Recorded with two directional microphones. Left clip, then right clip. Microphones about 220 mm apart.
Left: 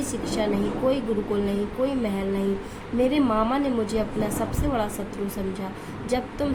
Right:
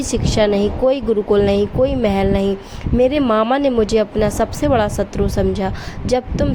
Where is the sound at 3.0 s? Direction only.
40° right (ahead or behind).